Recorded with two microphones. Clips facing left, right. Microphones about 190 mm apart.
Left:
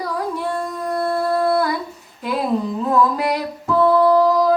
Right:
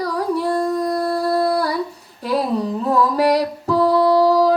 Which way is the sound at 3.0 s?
35° right (ahead or behind).